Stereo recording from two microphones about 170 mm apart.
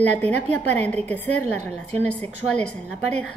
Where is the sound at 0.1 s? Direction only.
10° left (ahead or behind).